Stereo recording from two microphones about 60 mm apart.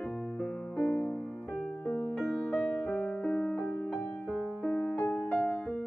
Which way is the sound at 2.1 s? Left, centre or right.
Centre.